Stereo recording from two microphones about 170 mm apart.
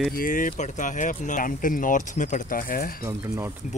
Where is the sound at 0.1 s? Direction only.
55° left (ahead or behind).